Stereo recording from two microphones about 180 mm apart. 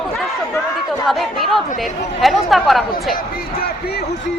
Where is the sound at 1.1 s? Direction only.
Centre (ahead or behind).